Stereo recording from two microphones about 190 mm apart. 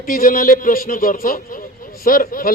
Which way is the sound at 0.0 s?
50° left (ahead or behind).